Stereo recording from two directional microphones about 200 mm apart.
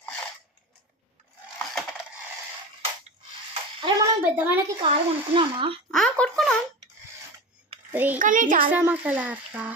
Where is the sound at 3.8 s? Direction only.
15° right (ahead or behind).